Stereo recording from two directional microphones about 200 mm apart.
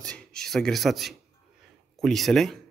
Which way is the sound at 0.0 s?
5° left (ahead or behind).